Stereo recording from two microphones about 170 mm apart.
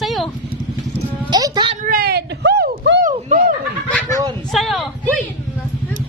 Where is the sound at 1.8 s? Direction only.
65° right (ahead or behind); by 2.9 s 85° right.